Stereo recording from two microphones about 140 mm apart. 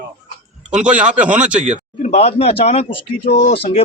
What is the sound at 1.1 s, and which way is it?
Speech, 10° right (ahead or behind).